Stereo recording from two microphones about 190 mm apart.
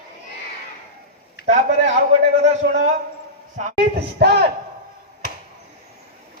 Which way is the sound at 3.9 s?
60° right (ahead or behind).